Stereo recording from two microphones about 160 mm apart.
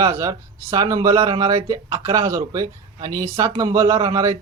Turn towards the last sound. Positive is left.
turn(degrees=-20)  # may be behind; listen again after turning